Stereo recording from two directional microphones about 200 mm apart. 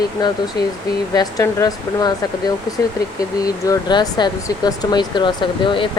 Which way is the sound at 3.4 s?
20° left (ahead or behind).